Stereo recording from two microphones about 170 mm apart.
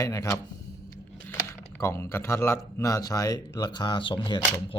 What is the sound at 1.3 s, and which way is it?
Speech, 15° left (ahead or behind).